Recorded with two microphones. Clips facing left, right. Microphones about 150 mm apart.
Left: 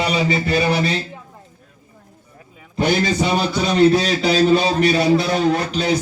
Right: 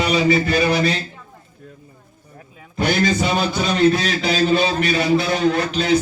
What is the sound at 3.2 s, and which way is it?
Music, 30° left (ahead or behind).